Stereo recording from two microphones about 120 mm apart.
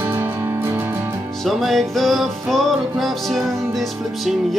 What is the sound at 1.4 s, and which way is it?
Music, centre (ahead or behind).